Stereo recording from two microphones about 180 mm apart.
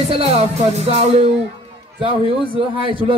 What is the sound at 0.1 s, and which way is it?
Music, 35° right (ahead or behind).